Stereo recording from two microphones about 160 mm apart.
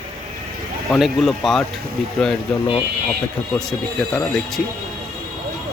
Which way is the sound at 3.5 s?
5° left (ahead or behind).